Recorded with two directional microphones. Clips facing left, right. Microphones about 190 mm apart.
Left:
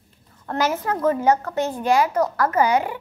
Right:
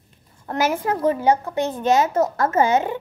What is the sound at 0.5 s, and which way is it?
A woman's voice, 10° right (ahead or behind).